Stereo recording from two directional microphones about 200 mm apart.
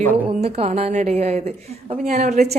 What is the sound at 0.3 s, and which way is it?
Speech, 30° right (ahead or behind).